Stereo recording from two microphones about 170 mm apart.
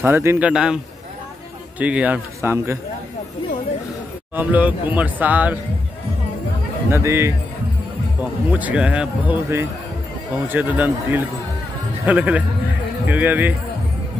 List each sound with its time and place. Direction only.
0.0 s a man's voice: 15° right (ahead or behind)
1.8 s a man's voice: 10° right (ahead or behind)
4.4 s a man's voice: 10° right (ahead or behind)
6.9 s a man's voice: 15° right (ahead or behind)